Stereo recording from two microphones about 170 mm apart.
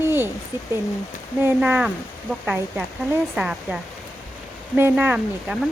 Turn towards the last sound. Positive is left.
turn(degrees=-5)  # may be behind; listen again after turning